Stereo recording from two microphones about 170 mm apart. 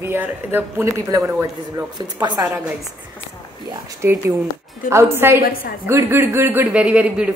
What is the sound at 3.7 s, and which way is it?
Speech, 15° right (ahead or behind).